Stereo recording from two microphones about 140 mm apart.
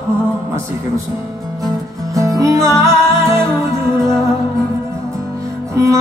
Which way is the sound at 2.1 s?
25° right (ahead or behind).